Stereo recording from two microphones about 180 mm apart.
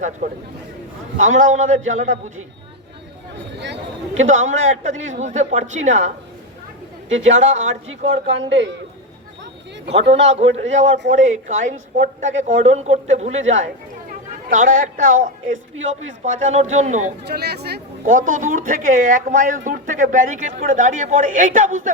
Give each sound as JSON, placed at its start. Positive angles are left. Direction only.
{"t": 0.2, "sound": "a woman's voice", "side_deg": -40}
{"t": 1.4, "sound": "a woman's voice", "side_deg": -45}
{"t": 4.2, "sound": "a man's voice", "side_deg": -90}
{"t": 4.9, "sound": "a woman's voice", "side_deg": -40}
{"t": 7.1, "sound": "a man's voice", "side_deg": -90}
{"t": 7.4, "sound": "a woman's voice", "side_deg": -40}
{"t": 7.9, "sound": "a man's voice", "side_deg": -90}
{"t": 9.9, "sound": "a woman's voice", "side_deg": -35}
{"t": 17.2, "sound": "speech", "side_deg": -65}
{"t": 18.1, "sound": "speech", "side_deg": -45}